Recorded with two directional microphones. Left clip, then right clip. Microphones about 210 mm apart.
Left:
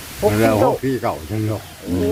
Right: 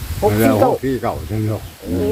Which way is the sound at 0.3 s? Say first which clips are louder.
Right 1 dB; 5° left (ahead or behind).